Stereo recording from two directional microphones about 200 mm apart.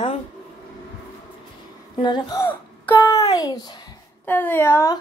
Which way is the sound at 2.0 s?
20° left (ahead or behind).